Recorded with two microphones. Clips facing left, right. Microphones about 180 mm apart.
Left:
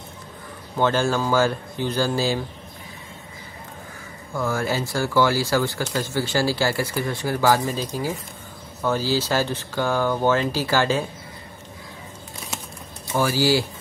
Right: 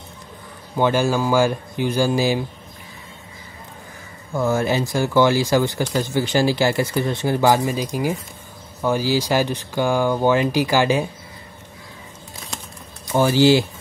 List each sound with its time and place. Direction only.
0.7 s speech: 10° right (ahead or behind)
4.4 s speech: 20° right (ahead or behind)
13.1 s speech: 25° right (ahead or behind)